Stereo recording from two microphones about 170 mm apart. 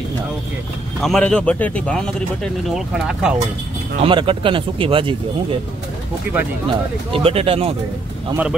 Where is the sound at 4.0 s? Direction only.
30° right (ahead or behind).